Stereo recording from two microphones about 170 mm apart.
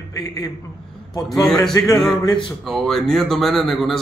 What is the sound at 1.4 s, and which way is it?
A man's voice, 5° left (ahead or behind).